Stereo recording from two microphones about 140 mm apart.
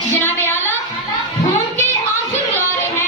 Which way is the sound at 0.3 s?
15° left (ahead or behind).